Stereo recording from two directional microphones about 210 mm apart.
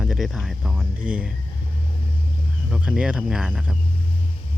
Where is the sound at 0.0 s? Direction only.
Centre (ahead or behind).